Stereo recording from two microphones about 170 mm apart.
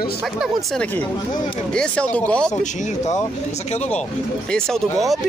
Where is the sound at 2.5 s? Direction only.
40° left (ahead or behind).